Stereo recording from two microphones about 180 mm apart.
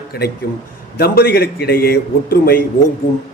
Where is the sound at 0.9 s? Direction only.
55° left (ahead or behind).